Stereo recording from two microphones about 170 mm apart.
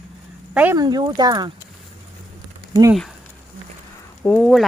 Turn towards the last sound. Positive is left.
turn(degrees=0)  # may be behind; listen again after turning